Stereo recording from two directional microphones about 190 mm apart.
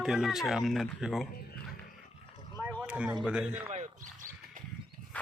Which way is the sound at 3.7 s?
40° right (ahead or behind).